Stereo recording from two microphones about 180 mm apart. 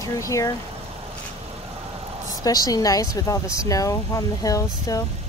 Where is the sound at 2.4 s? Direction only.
20° left (ahead or behind).